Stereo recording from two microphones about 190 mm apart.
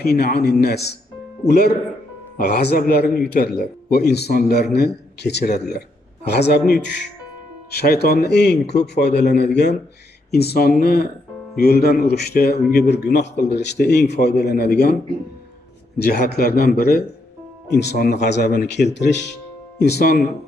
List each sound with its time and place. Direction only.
0.0 s a man's voice: 55° left (ahead or behind)
16.0 s a man's voice: 55° left (ahead or behind)